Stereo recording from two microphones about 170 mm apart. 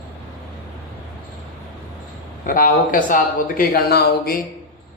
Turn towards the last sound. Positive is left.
turn(degrees=65)  # may be behind; listen again after turning